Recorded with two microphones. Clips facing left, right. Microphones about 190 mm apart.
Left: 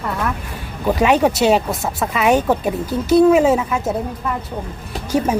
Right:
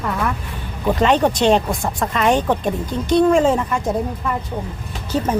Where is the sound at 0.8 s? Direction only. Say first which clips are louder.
Left 1 dB; 10° left (ahead or behind).